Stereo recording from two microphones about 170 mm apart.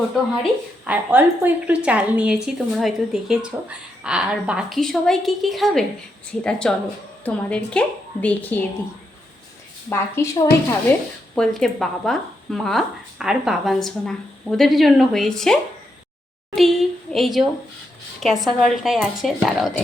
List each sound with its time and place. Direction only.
0.9 s a woman's voice: 10° right (ahead or behind); by 8.6 s 10° left (ahead or behind)
9.9 s a woman's voice: 15° left (ahead or behind)
11.3 s a woman's voice: centre (ahead or behind)
16.6 s a woman's voice: centre (ahead or behind)